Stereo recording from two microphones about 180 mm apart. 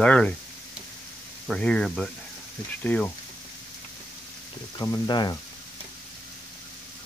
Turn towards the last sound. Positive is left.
turn(degrees=25)  # may be behind; listen again after turning